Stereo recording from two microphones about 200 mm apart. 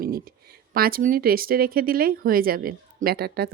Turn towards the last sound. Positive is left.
turn(degrees=-50)  # may be behind; listen again after turning